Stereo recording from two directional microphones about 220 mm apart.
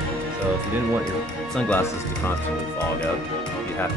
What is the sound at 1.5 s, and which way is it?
Speech, 5° left (ahead or behind).